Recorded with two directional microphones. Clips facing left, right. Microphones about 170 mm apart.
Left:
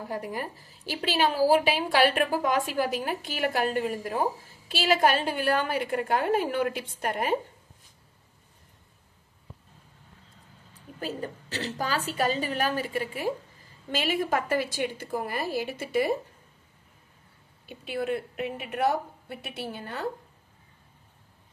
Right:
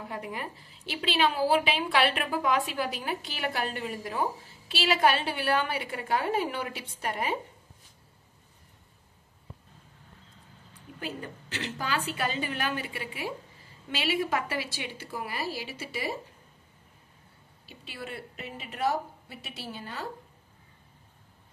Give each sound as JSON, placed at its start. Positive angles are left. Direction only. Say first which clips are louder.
{"t": 0.0, "sound": "a woman's voice", "louder": "left 4 dB", "side_deg": 40}
{"t": 11.0, "sound": "a woman's voice", "louder": "left 4 dB", "side_deg": 40}
{"t": 17.6, "sound": "a woman's voice", "louder": "left 11 dB", "side_deg": 55}